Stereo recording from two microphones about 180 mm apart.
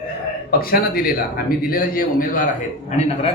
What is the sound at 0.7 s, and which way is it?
A man's voice, 55° left (ahead or behind).